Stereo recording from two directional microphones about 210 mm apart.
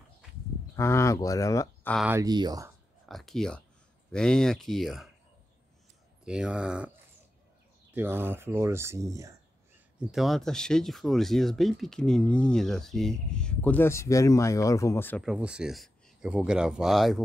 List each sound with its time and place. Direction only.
0.7 s speech: 15° left (ahead or behind)
2.0 s speech: 10° right (ahead or behind)
2.2 s speech: 20° right (ahead or behind)
3.1 s speech: centre (ahead or behind)
6.2 s speech: 5° right (ahead or behind)
7.9 s speech: 10° right (ahead or behind)
9.9 s speech: centre (ahead or behind)
15.2 s speech: 5° right (ahead or behind)